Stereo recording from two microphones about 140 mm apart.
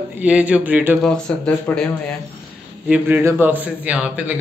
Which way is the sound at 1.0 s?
5° left (ahead or behind).